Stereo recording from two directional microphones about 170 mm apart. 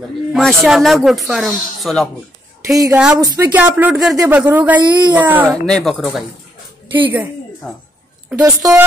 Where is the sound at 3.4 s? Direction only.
10° right (ahead or behind).